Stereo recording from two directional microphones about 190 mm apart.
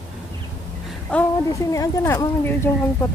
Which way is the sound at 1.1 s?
5° left (ahead or behind).